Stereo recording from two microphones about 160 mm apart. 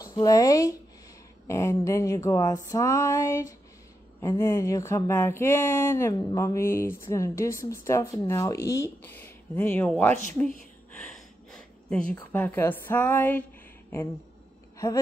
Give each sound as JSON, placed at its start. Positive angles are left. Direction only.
{"t": 0.0, "sound": "speech", "side_deg": 20}
{"t": 1.5, "sound": "a sound", "side_deg": 20}
{"t": 4.2, "sound": "speech", "side_deg": 20}
{"t": 11.0, "sound": "speech", "side_deg": 5}